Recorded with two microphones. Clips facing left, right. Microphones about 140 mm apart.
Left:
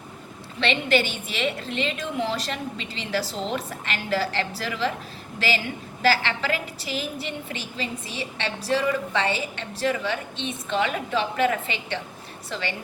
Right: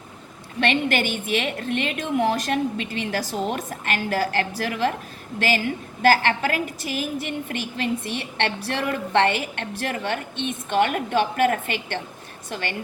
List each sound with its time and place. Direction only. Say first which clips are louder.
0.6 s a woman's voice: right 1 dB; 50° right (ahead or behind)